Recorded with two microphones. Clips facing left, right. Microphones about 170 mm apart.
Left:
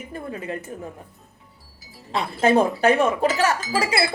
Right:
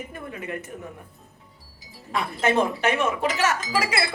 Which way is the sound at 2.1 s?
35° left (ahead or behind).